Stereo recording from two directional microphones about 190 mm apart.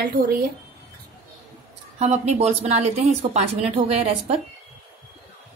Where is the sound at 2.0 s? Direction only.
35° right (ahead or behind).